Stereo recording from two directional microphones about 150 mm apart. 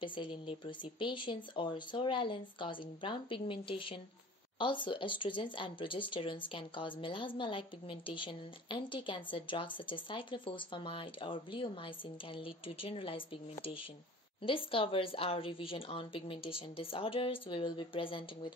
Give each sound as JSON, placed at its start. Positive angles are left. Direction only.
{"t": 0.0, "sound": "speech", "side_deg": 35}